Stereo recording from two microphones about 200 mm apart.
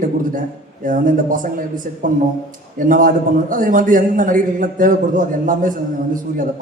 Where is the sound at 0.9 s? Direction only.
40° right (ahead or behind).